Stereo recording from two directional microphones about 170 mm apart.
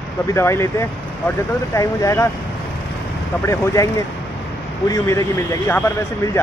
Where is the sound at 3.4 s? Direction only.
20° left (ahead or behind).